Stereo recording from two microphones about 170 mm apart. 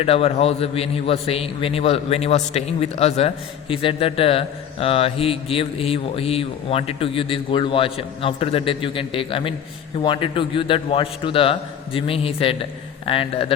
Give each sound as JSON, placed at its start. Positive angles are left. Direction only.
{"t": 0.0, "sound": "a man's voice", "side_deg": 35}